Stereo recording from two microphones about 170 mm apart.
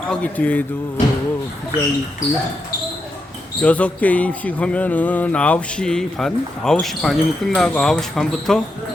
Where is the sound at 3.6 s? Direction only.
5° left (ahead or behind).